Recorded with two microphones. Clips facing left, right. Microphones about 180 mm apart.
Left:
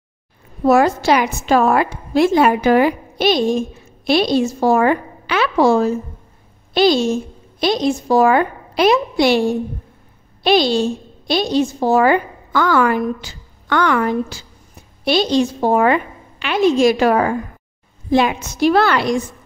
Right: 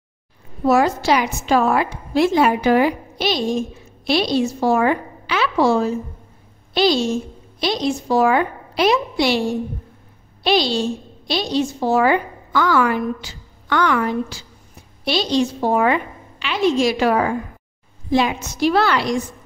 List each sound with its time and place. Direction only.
0.7 s a woman's voice: 50° left (ahead or behind)
10.4 s a woman's voice: 50° left (ahead or behind)